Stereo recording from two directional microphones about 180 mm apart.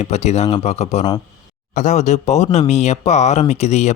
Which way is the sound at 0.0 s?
35° left (ahead or behind).